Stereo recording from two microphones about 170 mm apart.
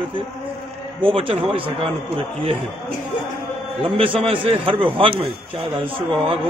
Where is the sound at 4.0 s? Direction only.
30° right (ahead or behind).